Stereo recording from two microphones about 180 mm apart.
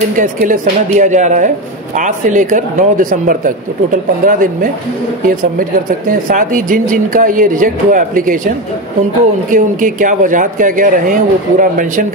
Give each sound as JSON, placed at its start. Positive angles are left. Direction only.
{"t": 0.1, "sound": "speech", "side_deg": -45}